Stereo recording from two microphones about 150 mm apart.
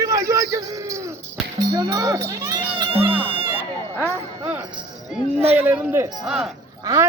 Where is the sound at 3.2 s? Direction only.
40° right (ahead or behind).